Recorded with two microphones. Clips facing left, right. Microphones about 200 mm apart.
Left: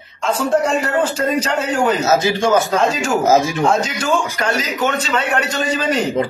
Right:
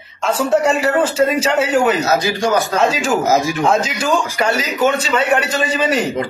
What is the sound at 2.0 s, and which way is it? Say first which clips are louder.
Speech: left 1 dB; 25° left (ahead or behind).